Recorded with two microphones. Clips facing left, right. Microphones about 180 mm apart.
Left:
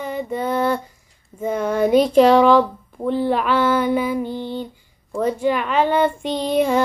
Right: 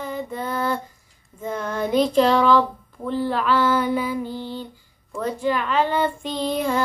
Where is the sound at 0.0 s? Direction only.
15° left (ahead or behind).